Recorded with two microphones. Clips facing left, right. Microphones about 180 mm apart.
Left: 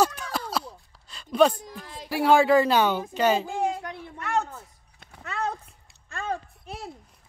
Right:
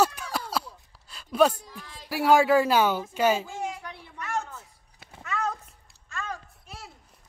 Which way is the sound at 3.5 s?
55° left (ahead or behind).